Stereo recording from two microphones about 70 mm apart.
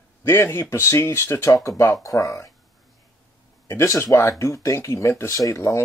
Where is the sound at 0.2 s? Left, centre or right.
Left.